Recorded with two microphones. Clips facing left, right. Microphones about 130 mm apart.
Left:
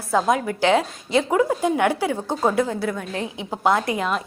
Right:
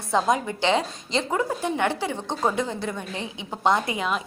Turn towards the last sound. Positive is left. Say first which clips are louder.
# left 3 dB
turn(degrees=0)  # may be behind; listen again after turning